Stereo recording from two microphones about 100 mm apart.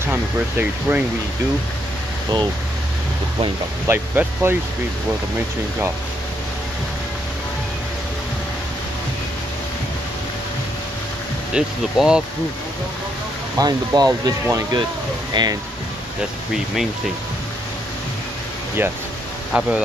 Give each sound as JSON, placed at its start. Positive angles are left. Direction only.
{"t": 0.0, "sound": "speech", "side_deg": -20}
{"t": 3.8, "sound": "speech", "side_deg": -20}
{"t": 11.5, "sound": "speech", "side_deg": -10}
{"t": 13.6, "sound": "speech", "side_deg": -40}
{"t": 18.8, "sound": "speech", "side_deg": -20}
{"t": 19.5, "sound": "speech", "side_deg": -10}